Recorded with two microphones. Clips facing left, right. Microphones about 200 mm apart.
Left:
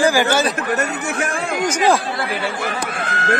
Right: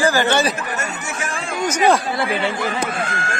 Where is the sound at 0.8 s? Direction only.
60° left (ahead or behind).